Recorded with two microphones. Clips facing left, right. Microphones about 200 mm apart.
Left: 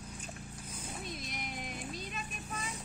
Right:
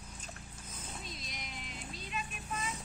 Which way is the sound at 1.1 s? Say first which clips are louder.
Left 5 dB; 55° left (ahead or behind).